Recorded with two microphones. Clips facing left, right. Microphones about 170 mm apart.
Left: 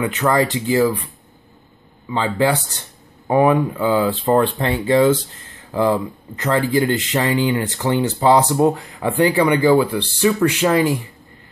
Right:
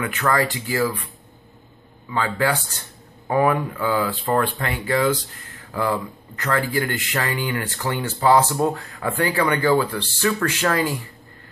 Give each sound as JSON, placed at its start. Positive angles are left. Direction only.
{"t": 0.0, "sound": "speech", "side_deg": 20}
{"t": 2.0, "sound": "speech", "side_deg": 20}